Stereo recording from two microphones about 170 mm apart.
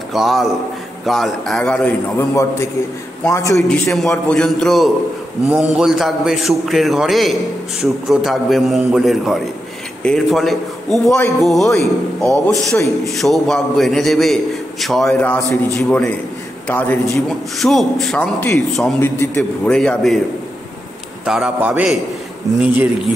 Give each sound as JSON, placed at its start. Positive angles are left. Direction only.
{"t": 0.1, "sound": "a man's voice", "side_deg": 0}
{"t": 3.3, "sound": "a man's voice", "side_deg": 20}
{"t": 3.6, "sound": "a man's voice", "side_deg": 5}
{"t": 12.3, "sound": "a man's voice", "side_deg": -20}
{"t": 13.0, "sound": "a man's voice", "side_deg": 0}
{"t": 18.9, "sound": "a man's voice", "side_deg": 15}
{"t": 21.3, "sound": "a man's voice", "side_deg": -5}